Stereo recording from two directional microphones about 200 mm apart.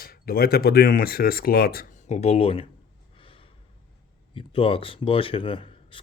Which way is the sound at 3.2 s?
25° left (ahead or behind).